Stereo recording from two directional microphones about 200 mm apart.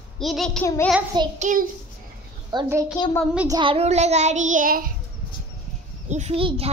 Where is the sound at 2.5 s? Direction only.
15° right (ahead or behind).